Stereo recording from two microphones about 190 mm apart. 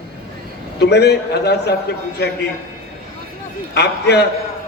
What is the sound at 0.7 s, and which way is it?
A man's voice, 60° left (ahead or behind).